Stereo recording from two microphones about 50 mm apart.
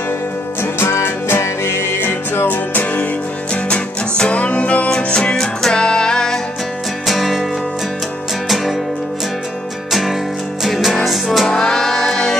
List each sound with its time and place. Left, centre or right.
0.6 s music: left
3.6 s music: left
4.9 s music: centre
7.1 s music: centre
9.8 s music: centre
11.4 s music: centre